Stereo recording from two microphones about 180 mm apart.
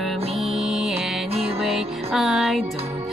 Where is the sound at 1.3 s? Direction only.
35° right (ahead or behind).